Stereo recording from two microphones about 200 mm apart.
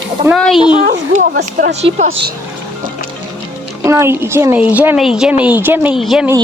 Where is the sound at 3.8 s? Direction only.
15° right (ahead or behind).